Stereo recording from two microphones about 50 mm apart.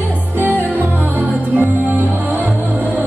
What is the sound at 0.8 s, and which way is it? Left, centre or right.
Music, right.